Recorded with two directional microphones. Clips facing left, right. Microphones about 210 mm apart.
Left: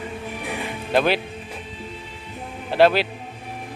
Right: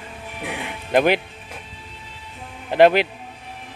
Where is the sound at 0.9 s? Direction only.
15° right (ahead or behind).